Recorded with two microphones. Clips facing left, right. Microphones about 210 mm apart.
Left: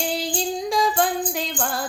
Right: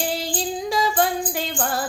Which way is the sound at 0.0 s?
Centre (ahead or behind).